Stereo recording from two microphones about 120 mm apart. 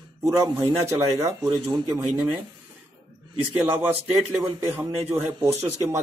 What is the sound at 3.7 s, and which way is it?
Speech, 20° right (ahead or behind).